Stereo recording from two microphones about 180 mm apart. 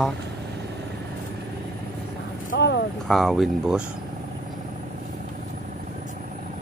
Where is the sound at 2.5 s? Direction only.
75° left (ahead or behind).